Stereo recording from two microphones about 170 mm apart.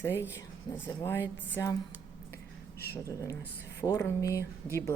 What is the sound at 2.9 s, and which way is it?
A woman's voice, 20° left (ahead or behind).